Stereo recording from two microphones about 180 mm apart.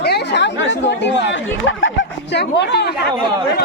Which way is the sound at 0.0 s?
70° left (ahead or behind).